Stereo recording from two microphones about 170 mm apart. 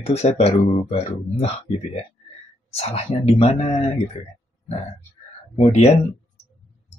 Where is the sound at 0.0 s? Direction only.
40° left (ahead or behind).